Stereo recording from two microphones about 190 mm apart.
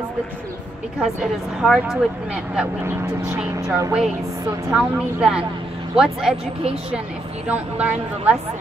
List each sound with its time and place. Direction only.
0.9 s speech: 5° right (ahead or behind)
4.6 s speech: 5° right (ahead or behind)
6.3 s speech: 30° right (ahead or behind)
7.4 s a woman's voice: 5° right (ahead or behind)